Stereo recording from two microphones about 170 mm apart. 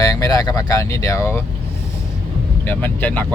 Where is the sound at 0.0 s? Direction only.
20° left (ahead or behind).